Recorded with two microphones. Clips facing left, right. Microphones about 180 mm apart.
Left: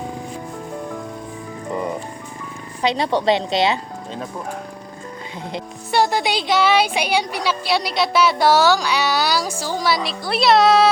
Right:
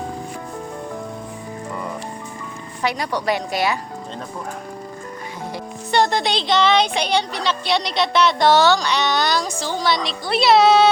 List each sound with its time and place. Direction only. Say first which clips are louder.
2.8 s a woman's voice: left 4 dB; 25° left (ahead or behind)
5.9 s speech: even; 5° left (ahead or behind)